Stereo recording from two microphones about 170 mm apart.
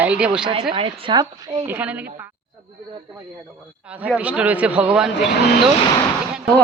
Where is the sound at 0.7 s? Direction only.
30° right (ahead or behind).